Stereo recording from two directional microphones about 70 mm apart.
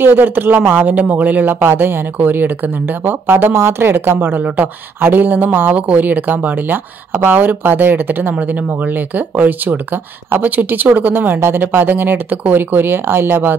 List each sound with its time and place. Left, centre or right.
0.0 s speech: right